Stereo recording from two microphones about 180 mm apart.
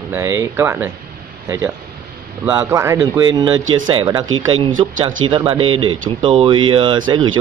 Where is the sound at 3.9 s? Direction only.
25° right (ahead or behind).